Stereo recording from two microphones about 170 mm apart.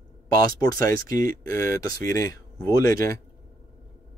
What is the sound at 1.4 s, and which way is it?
Speech, 15° left (ahead or behind).